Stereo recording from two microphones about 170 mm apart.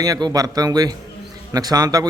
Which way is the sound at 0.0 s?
20° right (ahead or behind).